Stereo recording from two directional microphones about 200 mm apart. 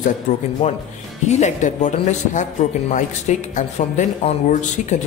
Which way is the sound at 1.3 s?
35° left (ahead or behind).